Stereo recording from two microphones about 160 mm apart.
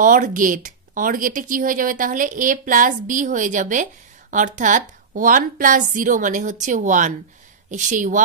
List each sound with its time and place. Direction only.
0.0 s speech: 55° right (ahead or behind)